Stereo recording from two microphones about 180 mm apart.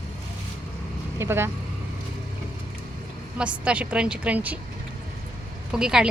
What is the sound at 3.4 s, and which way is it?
Speech, 5° right (ahead or behind).